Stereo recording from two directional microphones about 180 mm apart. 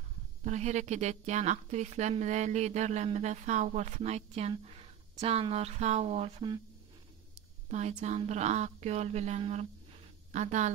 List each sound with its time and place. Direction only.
0.4 s a woman's voice: 40° right (ahead or behind)
8.0 s a woman's voice: 40° right (ahead or behind)